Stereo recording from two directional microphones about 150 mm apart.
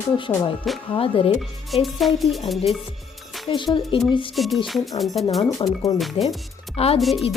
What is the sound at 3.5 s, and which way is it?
Speech, 35° left (ahead or behind).